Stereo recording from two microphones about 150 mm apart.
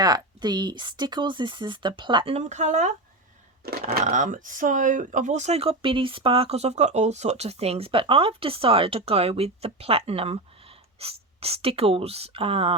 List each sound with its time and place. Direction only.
0.0 s speech: 25° right (ahead or behind); by 2.9 s 50° right (ahead or behind)
3.7 s speech: 90° right
4.0 s speech: 55° right (ahead or behind); by 12.7 s 40° right (ahead or behind)